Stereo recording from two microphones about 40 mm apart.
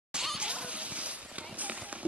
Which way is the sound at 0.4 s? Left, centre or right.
Right.